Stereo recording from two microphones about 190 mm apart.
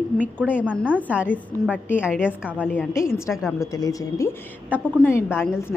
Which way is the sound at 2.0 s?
5° right (ahead or behind).